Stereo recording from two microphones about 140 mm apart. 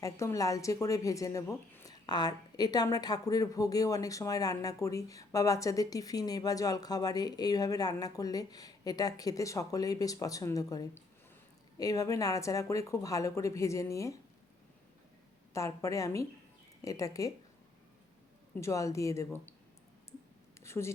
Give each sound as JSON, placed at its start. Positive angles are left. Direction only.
{"t": 0.0, "sound": "a woman's voice", "side_deg": 20}
{"t": 15.5, "sound": "a woman's voice", "side_deg": 20}
{"t": 18.6, "sound": "a woman's voice", "side_deg": 20}
{"t": 20.6, "sound": "a sound", "side_deg": 20}